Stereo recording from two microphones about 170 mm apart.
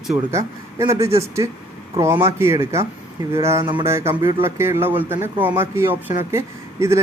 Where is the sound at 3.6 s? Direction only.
30° right (ahead or behind).